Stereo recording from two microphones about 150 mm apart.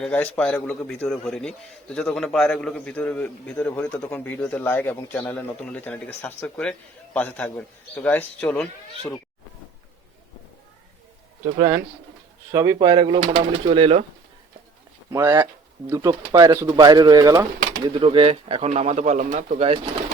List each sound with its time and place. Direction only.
0.0 s a man's voice: 10° left (ahead or behind)
11.5 s speech: 20° right (ahead or behind)
13.2 s speech: 45° right (ahead or behind)
15.1 s speech: 15° right (ahead or behind); by 19.8 s 45° right (ahead or behind)